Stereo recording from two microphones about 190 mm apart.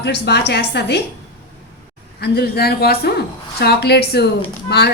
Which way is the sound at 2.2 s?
55° left (ahead or behind).